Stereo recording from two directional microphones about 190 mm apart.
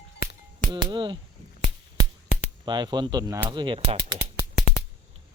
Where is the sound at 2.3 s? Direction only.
40° left (ahead or behind).